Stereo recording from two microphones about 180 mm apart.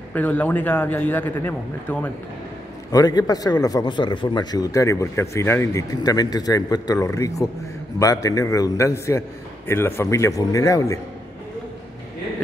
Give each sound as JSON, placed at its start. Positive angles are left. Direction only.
{"t": 0.1, "sound": "a man's voice", "side_deg": 10}
{"t": 2.9, "sound": "a man's voice", "side_deg": 20}